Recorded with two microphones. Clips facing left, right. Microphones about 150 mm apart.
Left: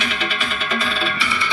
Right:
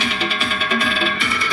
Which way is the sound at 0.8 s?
50° right (ahead or behind).